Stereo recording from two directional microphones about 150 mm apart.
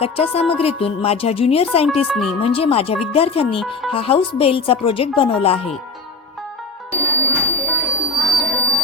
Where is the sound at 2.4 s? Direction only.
40° left (ahead or behind).